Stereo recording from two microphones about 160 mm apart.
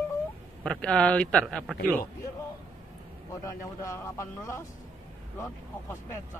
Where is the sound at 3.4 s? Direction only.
20° left (ahead or behind).